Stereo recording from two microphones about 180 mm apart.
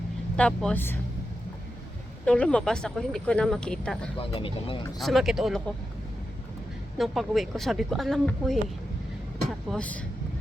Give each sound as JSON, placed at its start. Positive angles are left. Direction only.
{"t": 0.3, "sound": "speech", "side_deg": 5}
{"t": 2.2, "sound": "speech", "side_deg": 5}
{"t": 4.2, "sound": "speech", "side_deg": 30}
{"t": 4.9, "sound": "speech", "side_deg": 0}
{"t": 7.0, "sound": "speech", "side_deg": 0}
{"t": 9.6, "sound": "speech", "side_deg": 5}